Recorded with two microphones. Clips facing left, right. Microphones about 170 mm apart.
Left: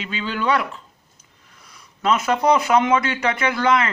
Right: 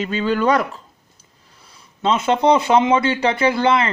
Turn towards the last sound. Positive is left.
turn(degrees=-30)  # may be behind; listen again after turning